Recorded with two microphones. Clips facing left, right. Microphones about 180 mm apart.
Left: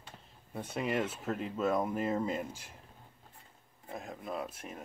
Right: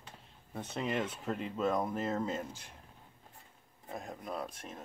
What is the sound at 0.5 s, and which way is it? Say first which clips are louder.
Speech: left 2 dB; 10° left (ahead or behind).